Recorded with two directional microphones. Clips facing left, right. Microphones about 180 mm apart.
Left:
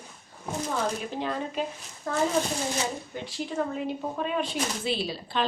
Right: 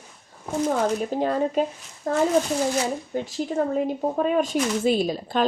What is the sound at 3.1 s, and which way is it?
Speech, 45° right (ahead or behind).